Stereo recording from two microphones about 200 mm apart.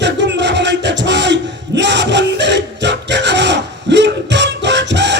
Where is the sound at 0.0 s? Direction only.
60° right (ahead or behind).